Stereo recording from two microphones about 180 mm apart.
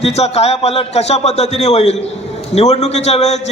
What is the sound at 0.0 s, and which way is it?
A man's voice, 35° left (ahead or behind).